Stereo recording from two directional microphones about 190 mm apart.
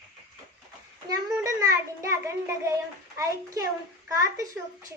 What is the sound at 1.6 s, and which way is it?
A child's voice, 15° right (ahead or behind).